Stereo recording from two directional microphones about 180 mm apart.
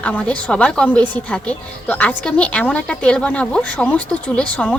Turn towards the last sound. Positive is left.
turn(degrees=5)  # may be behind; listen again after turning